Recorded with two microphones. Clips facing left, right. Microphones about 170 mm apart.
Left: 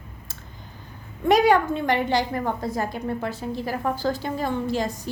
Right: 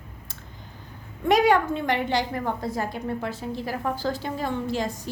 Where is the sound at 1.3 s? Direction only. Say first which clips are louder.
Left 2 dB; 35° left (ahead or behind).